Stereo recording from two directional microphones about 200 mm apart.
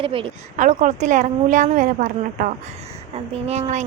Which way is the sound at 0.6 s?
40° right (ahead or behind).